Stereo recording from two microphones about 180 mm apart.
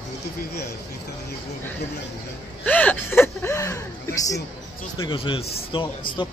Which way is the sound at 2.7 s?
10° left (ahead or behind).